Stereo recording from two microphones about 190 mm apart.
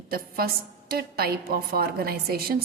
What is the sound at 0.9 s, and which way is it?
A woman's voice, 55° right (ahead or behind).